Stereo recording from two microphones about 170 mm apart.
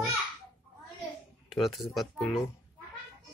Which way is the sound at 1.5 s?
Centre (ahead or behind).